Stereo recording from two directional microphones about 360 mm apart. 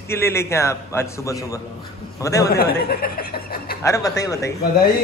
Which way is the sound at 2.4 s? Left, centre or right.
Left.